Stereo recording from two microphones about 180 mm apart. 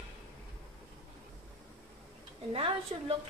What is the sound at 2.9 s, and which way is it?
Speech, 35° right (ahead or behind).